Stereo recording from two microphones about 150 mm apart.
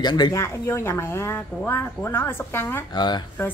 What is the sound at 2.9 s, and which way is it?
Speech, 30° left (ahead or behind).